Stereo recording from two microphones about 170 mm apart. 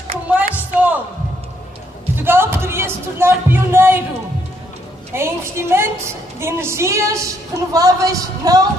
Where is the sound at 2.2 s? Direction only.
15° right (ahead or behind).